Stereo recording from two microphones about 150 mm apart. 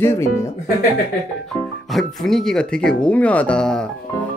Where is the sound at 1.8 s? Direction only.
Centre (ahead or behind).